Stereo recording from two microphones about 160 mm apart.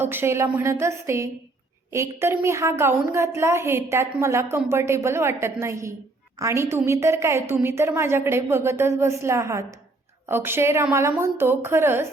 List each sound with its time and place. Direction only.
0.0 s a woman's voice: 15° right (ahead or behind)